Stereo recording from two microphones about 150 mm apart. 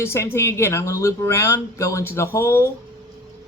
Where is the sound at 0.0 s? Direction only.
15° left (ahead or behind).